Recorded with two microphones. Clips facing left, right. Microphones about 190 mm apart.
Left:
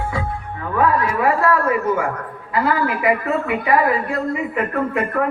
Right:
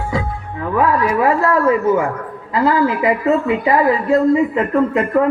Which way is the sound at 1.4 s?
25° right (ahead or behind).